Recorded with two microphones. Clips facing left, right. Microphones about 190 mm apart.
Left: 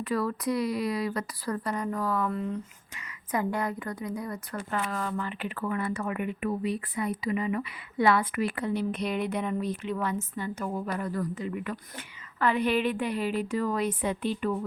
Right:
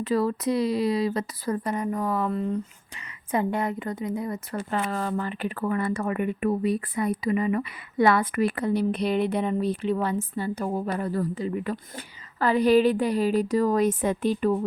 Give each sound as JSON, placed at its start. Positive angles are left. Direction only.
{"t": 0.0, "sound": "speech", "side_deg": -25}